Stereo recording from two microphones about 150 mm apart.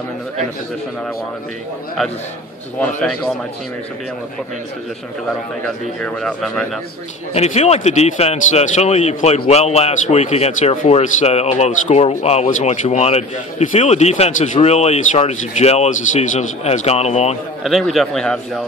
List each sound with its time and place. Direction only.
3.0 s a man's voice: 5° left (ahead or behind)
6.0 s a man's voice: 5° left (ahead or behind)
7.3 s a man's voice: 45° left (ahead or behind)
17.6 s a man's voice: centre (ahead or behind)